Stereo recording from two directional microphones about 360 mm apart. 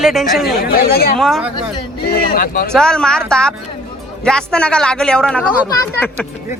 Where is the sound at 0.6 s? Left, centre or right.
Left.